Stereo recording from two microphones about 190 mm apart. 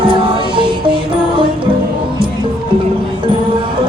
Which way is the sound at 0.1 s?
25° right (ahead or behind).